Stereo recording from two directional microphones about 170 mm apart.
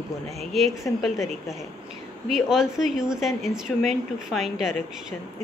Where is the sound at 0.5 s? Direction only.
Centre (ahead or behind).